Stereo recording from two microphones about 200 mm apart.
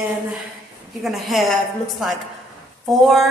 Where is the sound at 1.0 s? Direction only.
Centre (ahead or behind).